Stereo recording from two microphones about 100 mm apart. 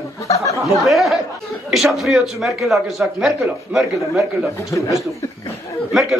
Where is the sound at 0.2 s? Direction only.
30° left (ahead or behind).